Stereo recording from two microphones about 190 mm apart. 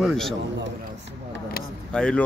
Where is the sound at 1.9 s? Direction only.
5° left (ahead or behind).